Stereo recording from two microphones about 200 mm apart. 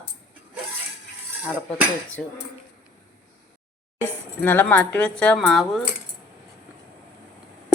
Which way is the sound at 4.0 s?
10° left (ahead or behind).